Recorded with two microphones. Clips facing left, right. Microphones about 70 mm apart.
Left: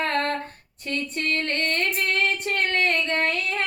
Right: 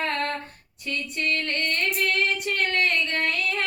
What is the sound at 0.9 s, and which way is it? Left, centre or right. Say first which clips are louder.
Female singing: left 1 dB; left.